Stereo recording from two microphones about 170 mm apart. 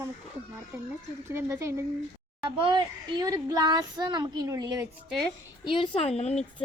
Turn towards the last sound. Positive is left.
turn(degrees=40)  # may be behind; listen again after turning